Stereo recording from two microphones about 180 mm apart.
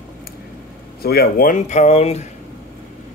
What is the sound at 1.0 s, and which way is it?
Speech, 60° left (ahead or behind).